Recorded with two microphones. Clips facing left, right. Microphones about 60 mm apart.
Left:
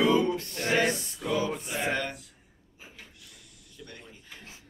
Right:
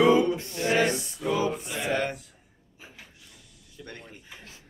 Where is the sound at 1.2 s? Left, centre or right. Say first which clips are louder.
Right 2 dB; centre.